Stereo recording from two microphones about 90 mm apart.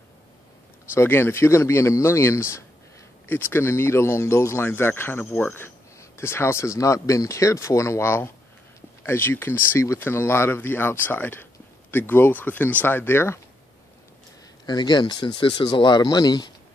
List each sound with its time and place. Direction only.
0.9 s speech: 25° left (ahead or behind)
14.7 s speech: 50° left (ahead or behind)